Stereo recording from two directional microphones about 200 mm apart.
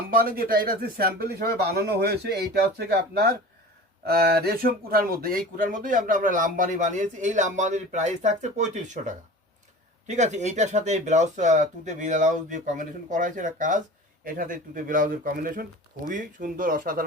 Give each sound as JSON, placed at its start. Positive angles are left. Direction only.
{"t": 0.3, "sound": "speech", "side_deg": -45}